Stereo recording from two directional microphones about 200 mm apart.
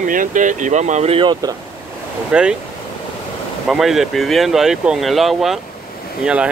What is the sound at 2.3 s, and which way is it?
Speech, 5° right (ahead or behind).